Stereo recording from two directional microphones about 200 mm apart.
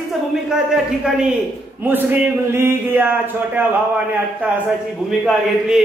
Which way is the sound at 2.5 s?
10° right (ahead or behind).